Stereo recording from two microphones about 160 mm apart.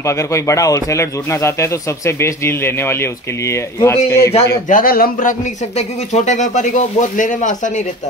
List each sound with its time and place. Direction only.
0.0 s speech: 20° left (ahead or behind)
4.6 s speech: 60° left (ahead or behind)